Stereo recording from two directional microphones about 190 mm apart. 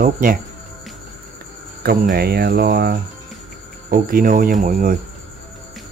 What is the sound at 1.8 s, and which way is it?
Speech, 55° right (ahead or behind).